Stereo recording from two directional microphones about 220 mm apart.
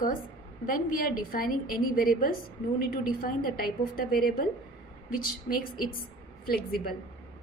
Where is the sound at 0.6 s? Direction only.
40° left (ahead or behind).